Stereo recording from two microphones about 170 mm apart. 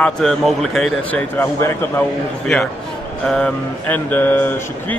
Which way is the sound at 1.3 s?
15° left (ahead or behind).